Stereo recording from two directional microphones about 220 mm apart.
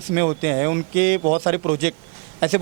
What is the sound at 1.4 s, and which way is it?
Speech, 20° right (ahead or behind).